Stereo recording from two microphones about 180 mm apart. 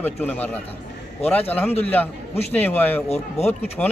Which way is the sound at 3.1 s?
35° left (ahead or behind).